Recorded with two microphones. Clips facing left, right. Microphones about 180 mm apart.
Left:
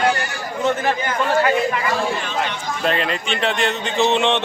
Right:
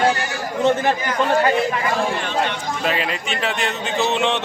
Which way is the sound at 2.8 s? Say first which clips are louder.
Left 3 dB; 5° right (ahead or behind).